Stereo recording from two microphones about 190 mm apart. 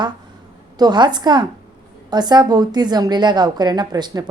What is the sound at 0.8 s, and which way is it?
A woman's voice, 25° right (ahead or behind).